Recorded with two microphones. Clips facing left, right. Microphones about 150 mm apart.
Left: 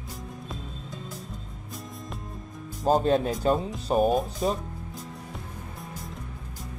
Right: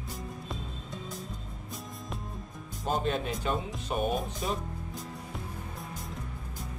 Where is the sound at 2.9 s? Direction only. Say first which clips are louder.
Left 8 dB; 40° left (ahead or behind).